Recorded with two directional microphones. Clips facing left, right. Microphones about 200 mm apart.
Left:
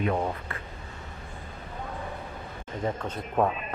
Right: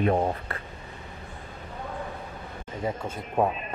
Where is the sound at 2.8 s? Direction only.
10° right (ahead or behind).